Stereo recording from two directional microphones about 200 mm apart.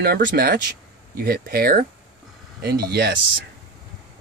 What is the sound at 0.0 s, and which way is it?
Speech, 45° right (ahead or behind).